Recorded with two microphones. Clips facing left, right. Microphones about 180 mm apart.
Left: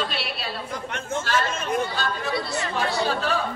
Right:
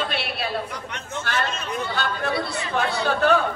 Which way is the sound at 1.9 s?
60° right (ahead or behind).